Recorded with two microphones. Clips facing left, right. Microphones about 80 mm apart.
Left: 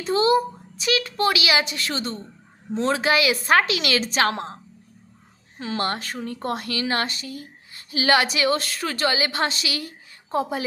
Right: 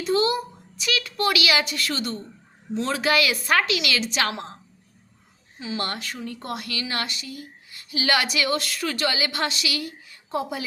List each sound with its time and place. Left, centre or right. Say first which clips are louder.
0.0 s a child's voice: left 3 dB; left
5.5 s a woman's voice: left 2 dB; left
5.8 s speech: left 6 dB; left